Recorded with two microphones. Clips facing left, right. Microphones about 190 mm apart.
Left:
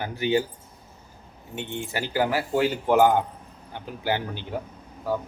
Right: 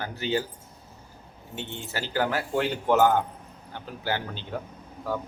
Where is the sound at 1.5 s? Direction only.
15° left (ahead or behind).